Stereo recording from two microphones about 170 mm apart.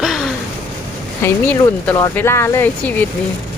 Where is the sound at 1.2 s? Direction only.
10° left (ahead or behind).